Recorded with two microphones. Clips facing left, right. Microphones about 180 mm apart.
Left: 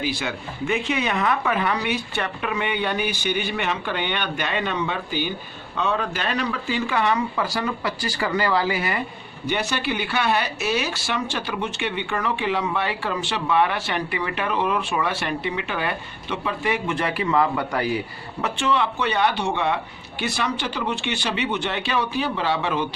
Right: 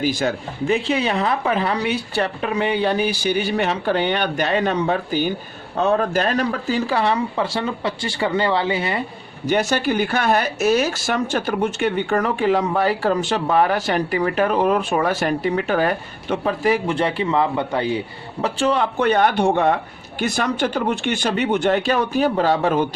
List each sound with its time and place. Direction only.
0.0 s a woman's voice: 45° right (ahead or behind); by 9.0 s 25° right (ahead or behind)
9.5 s speech: 45° right (ahead or behind); by 18.0 s 25° right (ahead or behind)
18.4 s speech: 40° right (ahead or behind)